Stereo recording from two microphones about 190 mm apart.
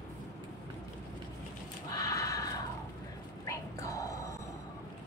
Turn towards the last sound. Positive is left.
turn(degrees=15)  # may be behind; listen again after turning